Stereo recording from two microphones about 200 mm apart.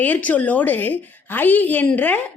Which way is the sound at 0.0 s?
10° left (ahead or behind).